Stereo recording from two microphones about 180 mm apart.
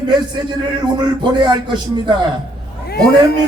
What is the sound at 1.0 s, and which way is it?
Speech, 25° right (ahead or behind).